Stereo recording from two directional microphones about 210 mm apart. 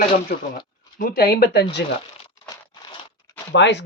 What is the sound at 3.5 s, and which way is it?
Speech, 55° left (ahead or behind).